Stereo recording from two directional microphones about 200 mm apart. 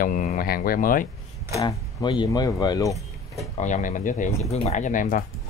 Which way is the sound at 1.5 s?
20° left (ahead or behind).